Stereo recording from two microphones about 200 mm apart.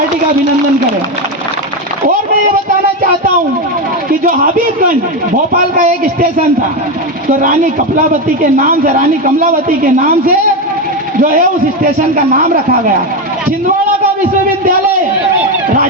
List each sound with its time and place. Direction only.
4.2 s a man's voice: 45° right (ahead or behind)
7.4 s a man's voice: 45° right (ahead or behind)
11.2 s a man's voice: 40° right (ahead or behind)